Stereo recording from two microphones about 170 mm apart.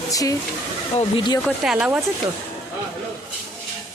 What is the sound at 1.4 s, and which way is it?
Speech, 5° right (ahead or behind).